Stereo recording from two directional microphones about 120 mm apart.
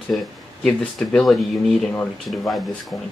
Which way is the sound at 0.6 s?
5° left (ahead or behind).